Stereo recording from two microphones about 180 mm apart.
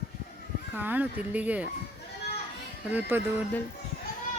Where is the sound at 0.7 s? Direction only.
10° right (ahead or behind).